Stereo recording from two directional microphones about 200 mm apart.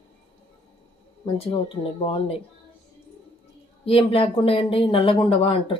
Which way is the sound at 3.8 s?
30° left (ahead or behind).